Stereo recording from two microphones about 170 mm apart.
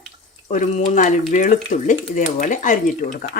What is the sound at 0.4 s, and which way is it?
Speech, 40° left (ahead or behind).